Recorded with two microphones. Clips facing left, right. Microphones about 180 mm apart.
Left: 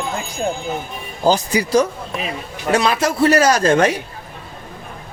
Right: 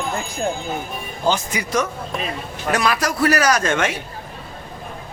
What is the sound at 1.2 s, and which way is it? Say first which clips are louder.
Speech: left 5 dB; 35° left (ahead or behind).